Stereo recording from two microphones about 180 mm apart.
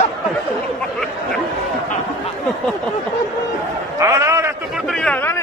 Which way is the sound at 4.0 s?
15° right (ahead or behind).